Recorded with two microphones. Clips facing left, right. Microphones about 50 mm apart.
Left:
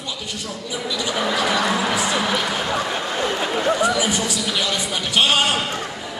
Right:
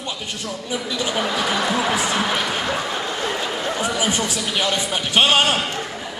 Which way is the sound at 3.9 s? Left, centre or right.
Right.